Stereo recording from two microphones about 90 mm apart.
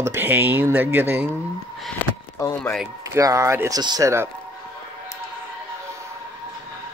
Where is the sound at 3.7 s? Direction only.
50° right (ahead or behind).